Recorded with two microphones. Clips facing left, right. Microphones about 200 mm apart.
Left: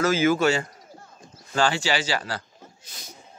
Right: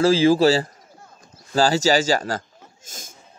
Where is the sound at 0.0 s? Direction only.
30° right (ahead or behind).